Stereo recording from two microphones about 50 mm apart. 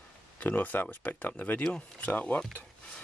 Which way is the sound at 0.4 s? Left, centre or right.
Left.